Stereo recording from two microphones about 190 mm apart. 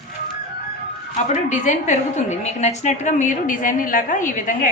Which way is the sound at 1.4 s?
40° left (ahead or behind).